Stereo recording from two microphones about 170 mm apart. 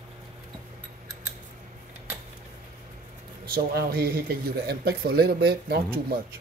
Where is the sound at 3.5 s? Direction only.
60° right (ahead or behind).